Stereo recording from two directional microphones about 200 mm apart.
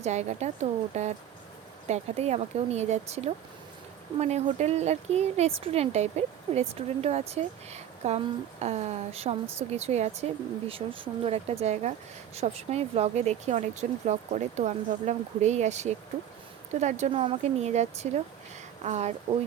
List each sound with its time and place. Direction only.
0.0 s speech: 35° right (ahead or behind)